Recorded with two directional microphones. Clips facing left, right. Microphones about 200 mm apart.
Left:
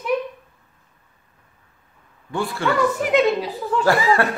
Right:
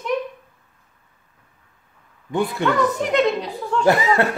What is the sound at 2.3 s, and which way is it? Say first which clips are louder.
Speech: right 3 dB; 20° right (ahead or behind).